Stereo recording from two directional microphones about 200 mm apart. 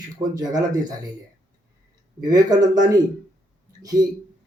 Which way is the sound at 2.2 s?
20° right (ahead or behind).